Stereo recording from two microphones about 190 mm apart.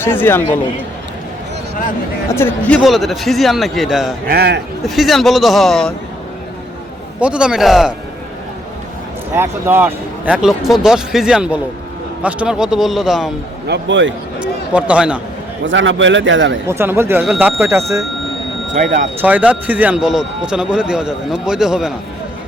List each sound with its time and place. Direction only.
0.0 s a man's voice: 10° left (ahead or behind)
2.3 s speech: 10° left (ahead or behind)
4.3 s a man's voice: 60° right (ahead or behind)
4.8 s speech: centre (ahead or behind)
7.2 s speech: 5° right (ahead or behind)
9.3 s speech: 10° right (ahead or behind)
13.7 s a man's voice: 75° right (ahead or behind)
14.4 s speech: 5° right (ahead or behind)
15.6 s a man's voice: 75° right (ahead or behind)
16.6 s speech: 10° right (ahead or behind)
17.2 s speech: centre (ahead or behind)
17.6 s speech: 15° right (ahead or behind)
18.7 s speech: 40° right (ahead or behind)
19.2 s speech: 10° right (ahead or behind)